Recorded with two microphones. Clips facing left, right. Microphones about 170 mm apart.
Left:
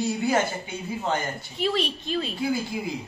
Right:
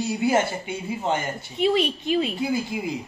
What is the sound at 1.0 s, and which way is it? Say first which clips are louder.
Speech: right 1 dB; 20° right (ahead or behind).